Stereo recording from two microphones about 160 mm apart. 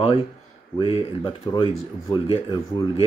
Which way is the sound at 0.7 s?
30° left (ahead or behind).